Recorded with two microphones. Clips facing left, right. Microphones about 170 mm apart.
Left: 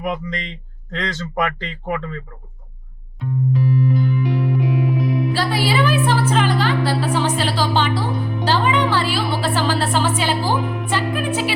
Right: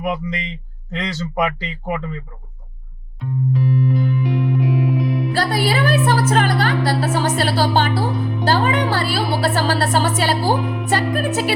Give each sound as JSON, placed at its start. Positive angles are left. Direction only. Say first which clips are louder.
{"t": 0.0, "sound": "speech", "louder": "right 1 dB", "side_deg": -10}
{"t": 3.2, "sound": "music", "louder": "even", "side_deg": 0}
{"t": 5.3, "sound": "a woman's voice", "louder": "right 1 dB", "side_deg": -45}
{"t": 10.6, "sound": "music", "louder": "right 1 dB", "side_deg": 0}
{"t": 10.8, "sound": "a woman's voice", "louder": "right 2 dB", "side_deg": -40}